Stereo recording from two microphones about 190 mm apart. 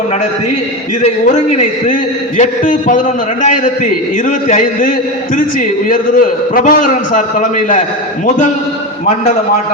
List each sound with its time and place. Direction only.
1.0 s a man's voice: 35° left (ahead or behind)